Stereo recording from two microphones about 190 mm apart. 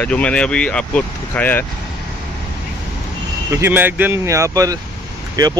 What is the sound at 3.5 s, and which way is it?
Speech, 10° right (ahead or behind).